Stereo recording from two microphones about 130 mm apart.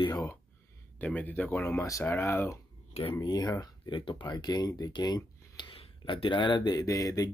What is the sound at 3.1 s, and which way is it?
Speech, 30° left (ahead or behind).